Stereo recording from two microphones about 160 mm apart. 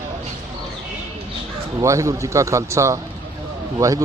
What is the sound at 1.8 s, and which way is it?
A man's voice, 20° right (ahead or behind).